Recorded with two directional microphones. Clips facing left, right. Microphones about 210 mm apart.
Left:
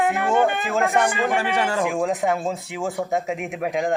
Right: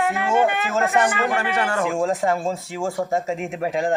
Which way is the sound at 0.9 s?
10° left (ahead or behind).